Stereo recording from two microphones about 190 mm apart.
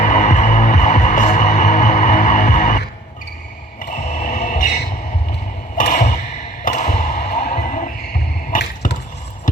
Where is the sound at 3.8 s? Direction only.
40° left (ahead or behind).